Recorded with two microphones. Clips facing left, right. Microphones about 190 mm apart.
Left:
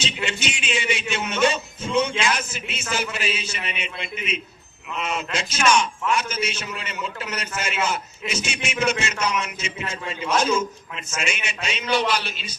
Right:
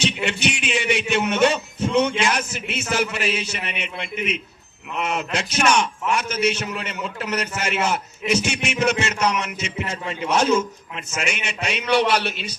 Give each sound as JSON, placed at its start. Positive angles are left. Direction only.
{"t": 0.0, "sound": "a man's voice", "side_deg": -65}